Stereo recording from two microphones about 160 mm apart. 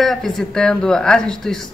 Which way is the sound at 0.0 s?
Centre (ahead or behind).